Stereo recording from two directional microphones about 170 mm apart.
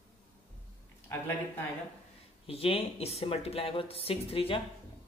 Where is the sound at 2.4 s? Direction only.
35° left (ahead or behind).